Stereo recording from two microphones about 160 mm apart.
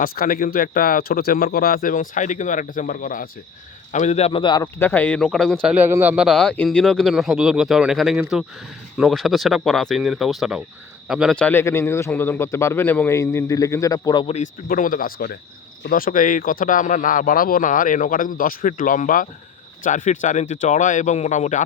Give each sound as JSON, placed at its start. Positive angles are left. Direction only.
{"t": 0.0, "sound": "speech", "side_deg": 65}
{"t": 3.9, "sound": "speech", "side_deg": 45}
{"t": 4.3, "sound": "speech", "side_deg": 30}
{"t": 4.8, "sound": "a man's voice", "side_deg": 10}
{"t": 5.6, "sound": "a man's voice", "side_deg": -10}
{"t": 14.3, "sound": "speech", "side_deg": 55}